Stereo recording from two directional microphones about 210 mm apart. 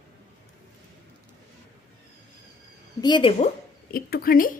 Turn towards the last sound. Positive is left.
turn(degrees=45)  # may be behind; listen again after turning